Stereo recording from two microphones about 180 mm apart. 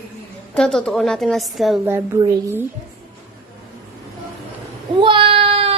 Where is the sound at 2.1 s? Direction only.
15° right (ahead or behind).